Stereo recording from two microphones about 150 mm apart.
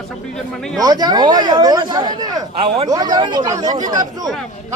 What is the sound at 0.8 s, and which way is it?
Speech, 25° right (ahead or behind).